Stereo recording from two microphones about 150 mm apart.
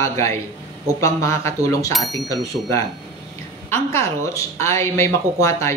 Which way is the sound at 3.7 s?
15° left (ahead or behind).